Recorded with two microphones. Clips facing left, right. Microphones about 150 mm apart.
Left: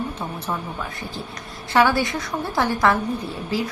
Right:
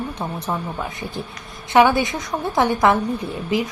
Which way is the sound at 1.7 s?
20° right (ahead or behind).